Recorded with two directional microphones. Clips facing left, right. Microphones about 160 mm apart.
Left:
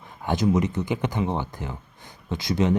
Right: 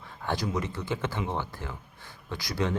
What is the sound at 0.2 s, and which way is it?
Speech, 20° left (ahead or behind).